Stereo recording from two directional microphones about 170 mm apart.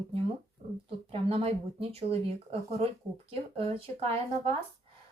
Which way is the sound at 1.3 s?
35° right (ahead or behind).